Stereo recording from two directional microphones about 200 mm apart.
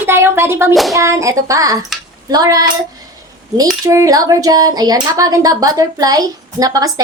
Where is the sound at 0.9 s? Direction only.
15° right (ahead or behind).